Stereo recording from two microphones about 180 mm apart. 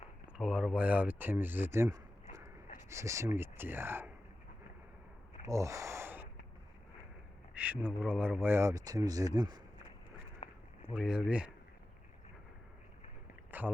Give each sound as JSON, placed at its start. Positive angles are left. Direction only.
{"t": 0.3, "sound": "speech", "side_deg": -5}
{"t": 5.5, "sound": "speech", "side_deg": -15}
{"t": 7.5, "sound": "speech", "side_deg": -10}
{"t": 10.9, "sound": "speech", "side_deg": -5}
{"t": 13.5, "sound": "a sound", "side_deg": -10}